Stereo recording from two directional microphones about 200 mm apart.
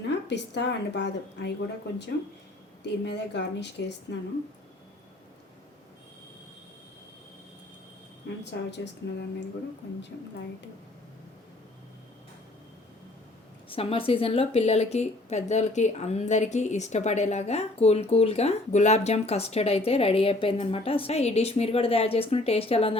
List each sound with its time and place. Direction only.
0.1 s speech: 60° left (ahead or behind)
2.8 s speech: 60° left (ahead or behind)
8.7 s speech: 60° left (ahead or behind)
13.7 s speech: 25° left (ahead or behind)